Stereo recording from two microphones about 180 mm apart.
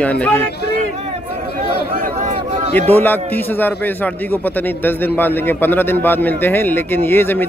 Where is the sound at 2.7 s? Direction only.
10° left (ahead or behind).